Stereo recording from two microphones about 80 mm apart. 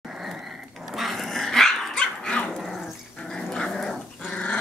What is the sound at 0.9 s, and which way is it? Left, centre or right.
Dog, centre.